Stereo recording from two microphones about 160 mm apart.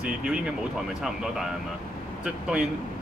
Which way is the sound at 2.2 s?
5° right (ahead or behind).